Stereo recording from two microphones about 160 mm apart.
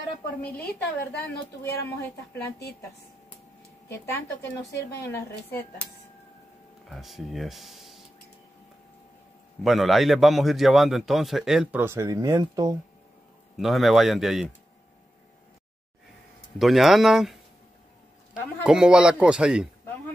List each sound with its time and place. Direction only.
1.2 s speech: 15° left (ahead or behind)
3.9 s speech: 20° left (ahead or behind)
6.9 s a man's voice: centre (ahead or behind)
9.6 s a man's voice: centre (ahead or behind)
11.8 s speech: 15° right (ahead or behind)
13.6 s a man's voice: centre (ahead or behind)
16.5 s a man's voice: centre (ahead or behind)